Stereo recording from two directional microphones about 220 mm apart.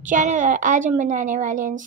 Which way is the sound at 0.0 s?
35° right (ahead or behind).